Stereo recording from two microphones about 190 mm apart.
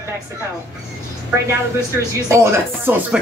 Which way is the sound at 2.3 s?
15° right (ahead or behind).